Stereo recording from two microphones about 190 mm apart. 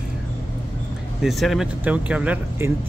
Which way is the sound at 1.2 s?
Centre (ahead or behind).